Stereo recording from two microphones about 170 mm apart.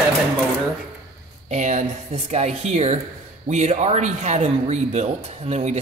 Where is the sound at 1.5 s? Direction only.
45° right (ahead or behind).